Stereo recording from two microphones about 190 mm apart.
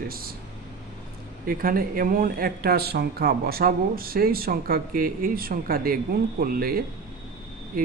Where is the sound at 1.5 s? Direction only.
50° right (ahead or behind).